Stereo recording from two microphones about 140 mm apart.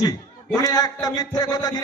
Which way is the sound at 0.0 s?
25° left (ahead or behind).